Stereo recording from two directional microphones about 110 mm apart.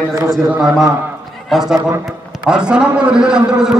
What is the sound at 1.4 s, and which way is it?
A man's voice, 5° right (ahead or behind).